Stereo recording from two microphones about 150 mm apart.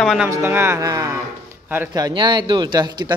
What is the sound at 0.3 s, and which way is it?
A man's voice, 15° right (ahead or behind).